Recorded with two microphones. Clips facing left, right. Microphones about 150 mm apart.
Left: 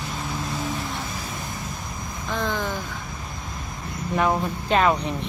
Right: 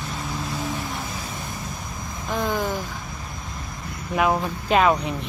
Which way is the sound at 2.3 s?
10° right (ahead or behind).